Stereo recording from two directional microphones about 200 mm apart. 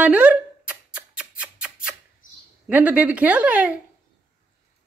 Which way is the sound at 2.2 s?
45° left (ahead or behind).